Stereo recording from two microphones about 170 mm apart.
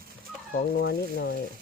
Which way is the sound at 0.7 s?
65° left (ahead or behind).